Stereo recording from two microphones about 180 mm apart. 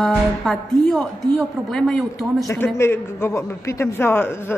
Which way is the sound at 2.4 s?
15° left (ahead or behind).